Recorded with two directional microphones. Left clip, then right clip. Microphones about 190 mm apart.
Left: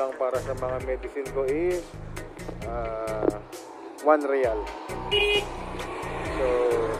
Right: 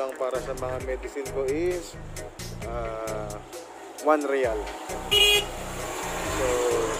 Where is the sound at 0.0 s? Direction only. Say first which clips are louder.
Left 2 dB; 10° right (ahead or behind).